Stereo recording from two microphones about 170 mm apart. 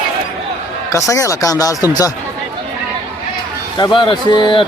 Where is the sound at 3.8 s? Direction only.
30° left (ahead or behind).